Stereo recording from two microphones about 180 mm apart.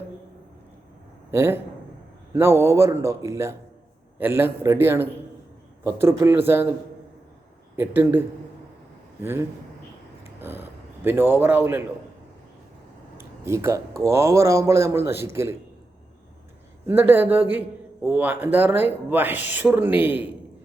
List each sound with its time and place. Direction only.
1.3 s speech: 15° right (ahead or behind)
7.8 s speech: 10° right (ahead or behind)
9.2 s speech: 10° right (ahead or behind)
13.1 s speech: 15° right (ahead or behind)
16.8 s speech: 10° right (ahead or behind)